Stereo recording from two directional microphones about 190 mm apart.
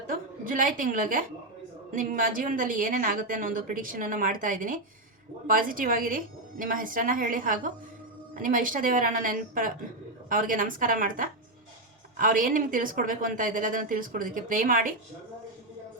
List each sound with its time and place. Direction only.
0.1 s a woman's voice: 45° right (ahead or behind)